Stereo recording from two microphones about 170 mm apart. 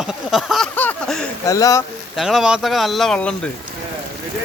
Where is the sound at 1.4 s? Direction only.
20° left (ahead or behind).